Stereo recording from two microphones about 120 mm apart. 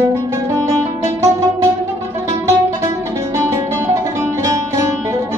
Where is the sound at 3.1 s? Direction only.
25° right (ahead or behind).